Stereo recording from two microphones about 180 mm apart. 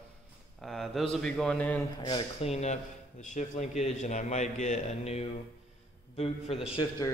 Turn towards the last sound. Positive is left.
turn(degrees=20)  # may be behind; listen again after turning